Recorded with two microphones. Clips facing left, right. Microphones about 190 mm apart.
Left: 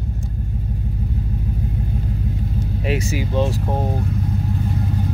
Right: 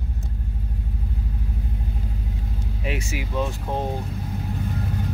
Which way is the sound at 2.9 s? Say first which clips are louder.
Left 6 dB; 35° left (ahead or behind).